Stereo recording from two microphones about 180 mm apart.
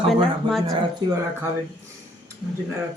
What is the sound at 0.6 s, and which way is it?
Speech, 20° right (ahead or behind).